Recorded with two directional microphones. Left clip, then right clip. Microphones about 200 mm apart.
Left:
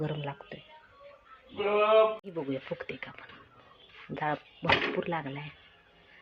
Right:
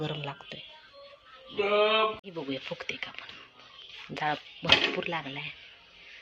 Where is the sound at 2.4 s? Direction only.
5° left (ahead or behind).